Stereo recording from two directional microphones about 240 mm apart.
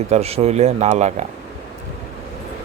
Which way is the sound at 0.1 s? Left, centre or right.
Right.